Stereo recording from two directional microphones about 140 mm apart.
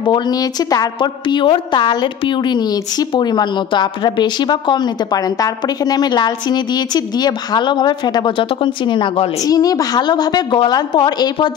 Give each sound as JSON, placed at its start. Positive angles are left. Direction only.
{"t": 0.0, "sound": "a woman's voice", "side_deg": 30}
{"t": 9.5, "sound": "a woman's voice", "side_deg": 25}